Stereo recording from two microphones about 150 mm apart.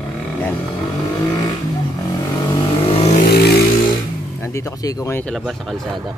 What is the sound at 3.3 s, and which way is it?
Vehicle, 90° left.